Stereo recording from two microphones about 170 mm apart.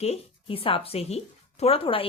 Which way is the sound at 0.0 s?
35° left (ahead or behind).